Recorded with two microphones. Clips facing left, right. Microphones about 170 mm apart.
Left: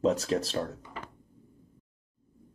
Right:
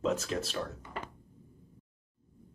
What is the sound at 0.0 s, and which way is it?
Speech, 35° left (ahead or behind).